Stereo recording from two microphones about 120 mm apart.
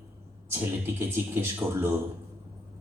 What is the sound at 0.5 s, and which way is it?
A man's voice, 20° right (ahead or behind).